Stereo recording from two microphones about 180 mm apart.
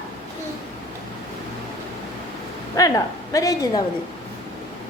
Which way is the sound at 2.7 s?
20° left (ahead or behind).